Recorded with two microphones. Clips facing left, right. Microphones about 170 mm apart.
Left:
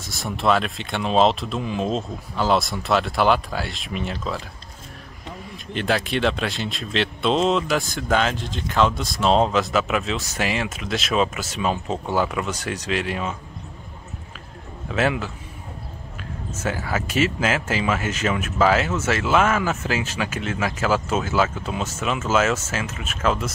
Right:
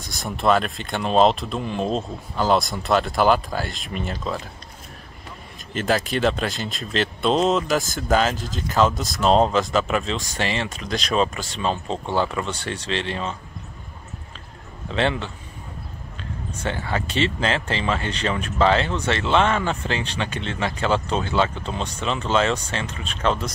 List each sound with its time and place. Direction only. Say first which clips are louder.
0.0 s speech: right 1 dB; centre (ahead or behind)
5.7 s speech: right 1 dB; centre (ahead or behind)
14.9 s speech: left 1 dB; 5° left (ahead or behind)